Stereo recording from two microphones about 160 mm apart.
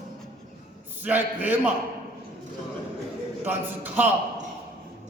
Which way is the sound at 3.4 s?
10° right (ahead or behind).